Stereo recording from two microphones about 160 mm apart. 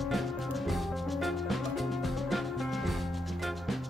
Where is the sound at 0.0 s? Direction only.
Centre (ahead or behind).